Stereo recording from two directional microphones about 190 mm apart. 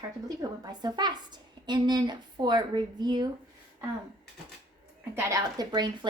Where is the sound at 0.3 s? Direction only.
20° right (ahead or behind).